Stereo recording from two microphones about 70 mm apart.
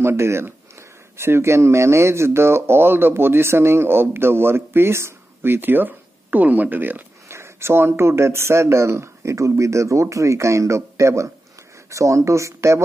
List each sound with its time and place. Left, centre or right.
0.0 s speech: right
7.2 s speech: right